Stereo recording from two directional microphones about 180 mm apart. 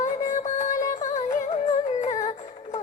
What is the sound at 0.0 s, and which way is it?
Music, 45° left (ahead or behind).